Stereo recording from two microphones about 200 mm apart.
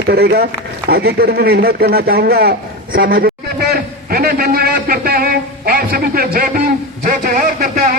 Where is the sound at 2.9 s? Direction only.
45° right (ahead or behind).